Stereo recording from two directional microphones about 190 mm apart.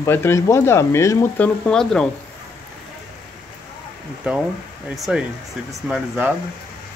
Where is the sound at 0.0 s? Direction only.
15° left (ahead or behind).